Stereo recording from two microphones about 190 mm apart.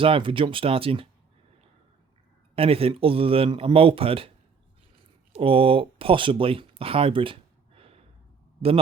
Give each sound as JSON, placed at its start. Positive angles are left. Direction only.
{"t": 0.0, "sound": "speech", "side_deg": -25}
{"t": 2.6, "sound": "speech", "side_deg": -30}
{"t": 5.3, "sound": "speech", "side_deg": -30}
{"t": 7.8, "sound": "gasp", "side_deg": -30}